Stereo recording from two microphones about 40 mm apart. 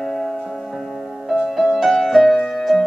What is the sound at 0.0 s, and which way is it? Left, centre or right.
Music, centre.